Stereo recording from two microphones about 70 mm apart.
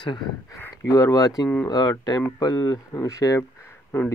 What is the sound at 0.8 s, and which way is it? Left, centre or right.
Speech, left.